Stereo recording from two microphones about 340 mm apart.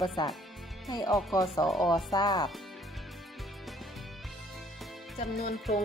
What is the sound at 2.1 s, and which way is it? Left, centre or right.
Speech, centre.